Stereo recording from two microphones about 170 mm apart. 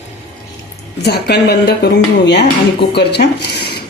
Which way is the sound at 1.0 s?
75° left (ahead or behind).